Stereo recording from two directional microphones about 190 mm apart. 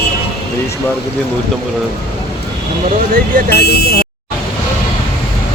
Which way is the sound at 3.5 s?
55° left (ahead or behind).